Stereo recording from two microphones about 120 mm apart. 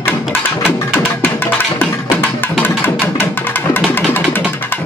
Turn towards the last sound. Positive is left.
turn(degrees=15)  # may be behind; listen again after turning